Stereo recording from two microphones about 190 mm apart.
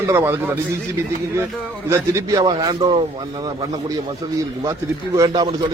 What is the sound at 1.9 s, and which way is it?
A man's voice, 15° right (ahead or behind).